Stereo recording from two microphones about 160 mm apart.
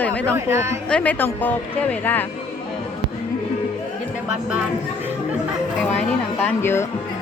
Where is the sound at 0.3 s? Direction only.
15° right (ahead or behind).